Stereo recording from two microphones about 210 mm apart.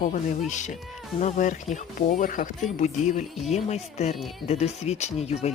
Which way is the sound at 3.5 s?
30° left (ahead or behind).